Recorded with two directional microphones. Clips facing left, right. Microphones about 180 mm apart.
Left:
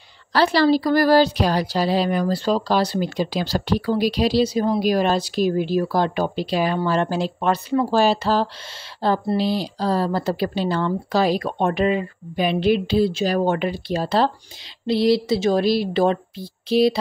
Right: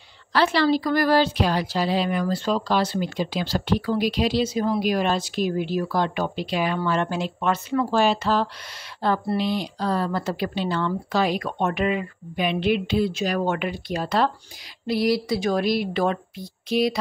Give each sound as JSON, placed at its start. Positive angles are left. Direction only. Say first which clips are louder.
{"t": 0.3, "sound": "a woman's voice", "louder": "left 3 dB", "side_deg": 35}